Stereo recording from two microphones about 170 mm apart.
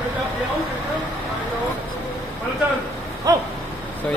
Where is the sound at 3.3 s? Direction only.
20° right (ahead or behind).